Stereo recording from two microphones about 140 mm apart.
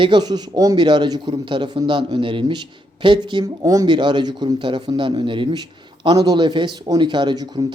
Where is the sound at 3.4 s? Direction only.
25° right (ahead or behind).